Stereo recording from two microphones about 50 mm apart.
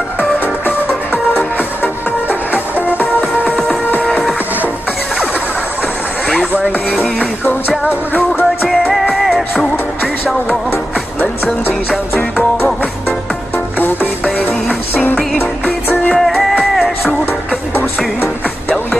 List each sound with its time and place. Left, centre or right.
0.7 s music: left
2.2 s music: right
3.0 s music: left
8.6 s music: centre
16.2 s music: centre
17.3 s music: left